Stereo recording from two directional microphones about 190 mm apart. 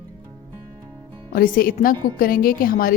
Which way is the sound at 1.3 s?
50° left (ahead or behind).